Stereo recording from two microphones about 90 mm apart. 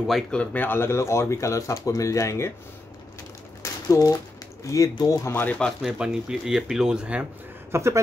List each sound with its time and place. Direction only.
0.3 s speech: 15° left (ahead or behind); by 2.5 s 35° left (ahead or behind)
3.6 s a sound: 35° left (ahead or behind)
4.6 s speech: 35° left (ahead or behind)
5.3 s speech: 20° left (ahead or behind)
5.8 s speech: 5° right (ahead or behind)
7.7 s speech: 30° right (ahead or behind)